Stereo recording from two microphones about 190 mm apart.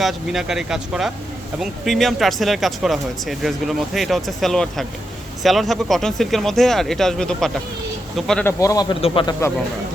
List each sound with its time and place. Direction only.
0.0 s speech: centre (ahead or behind)
8.5 s a man's voice: 20° left (ahead or behind)